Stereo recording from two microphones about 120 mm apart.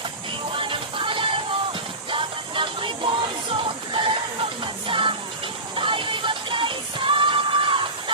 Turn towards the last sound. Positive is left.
turn(degrees=-45)  # may be behind; listen again after turning